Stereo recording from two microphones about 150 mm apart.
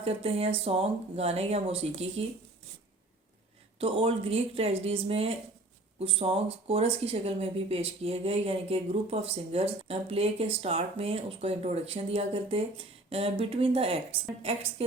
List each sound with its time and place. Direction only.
0.0 s speech: 40° right (ahead or behind)
3.8 s speech: 40° right (ahead or behind)